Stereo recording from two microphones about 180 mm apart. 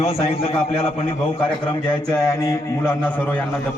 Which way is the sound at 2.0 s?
20° left (ahead or behind).